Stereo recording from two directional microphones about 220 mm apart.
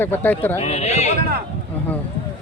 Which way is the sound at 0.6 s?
30° left (ahead or behind).